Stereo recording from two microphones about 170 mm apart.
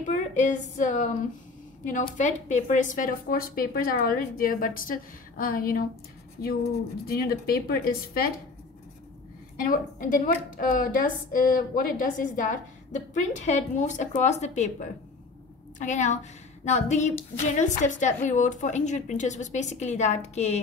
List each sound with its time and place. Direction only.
0.1 s a woman's voice: 45° left (ahead or behind)
2.1 s a woman's voice: 45° left (ahead or behind); by 8.3 s 65° left (ahead or behind)
9.6 s a woman's voice: 55° left (ahead or behind)